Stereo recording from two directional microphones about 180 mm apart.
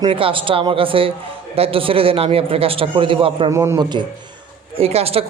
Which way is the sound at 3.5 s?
15° right (ahead or behind).